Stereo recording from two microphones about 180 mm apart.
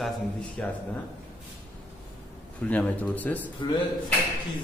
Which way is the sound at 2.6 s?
10° left (ahead or behind).